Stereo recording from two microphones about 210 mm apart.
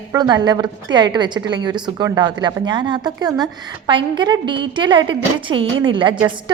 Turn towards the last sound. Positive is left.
turn(degrees=-20)  # may be behind; listen again after turning